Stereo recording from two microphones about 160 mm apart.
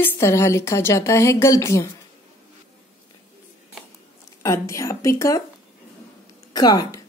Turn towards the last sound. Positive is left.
turn(degrees=25)  # may be behind; listen again after turning